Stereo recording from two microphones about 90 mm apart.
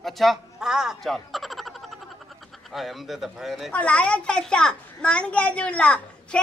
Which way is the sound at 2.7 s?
Centre (ahead or behind).